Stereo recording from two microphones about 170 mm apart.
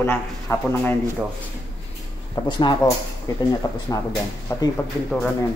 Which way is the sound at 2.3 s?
25° left (ahead or behind).